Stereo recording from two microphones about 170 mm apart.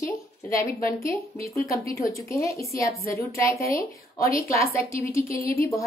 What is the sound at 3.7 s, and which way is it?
Speech, 55° left (ahead or behind).